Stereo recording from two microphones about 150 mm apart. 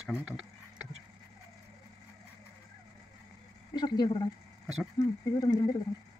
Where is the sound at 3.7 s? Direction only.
25° left (ahead or behind).